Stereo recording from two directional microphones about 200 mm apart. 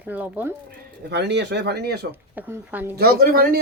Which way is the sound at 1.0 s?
55° right (ahead or behind).